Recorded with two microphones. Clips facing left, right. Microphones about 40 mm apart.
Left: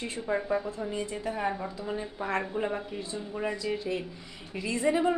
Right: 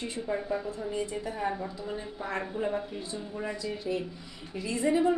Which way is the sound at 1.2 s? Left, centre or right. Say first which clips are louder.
Left 2 dB; left.